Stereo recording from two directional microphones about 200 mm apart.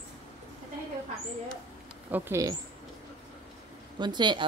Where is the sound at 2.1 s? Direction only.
15° right (ahead or behind).